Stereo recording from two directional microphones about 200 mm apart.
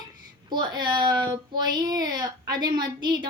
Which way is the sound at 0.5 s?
20° right (ahead or behind).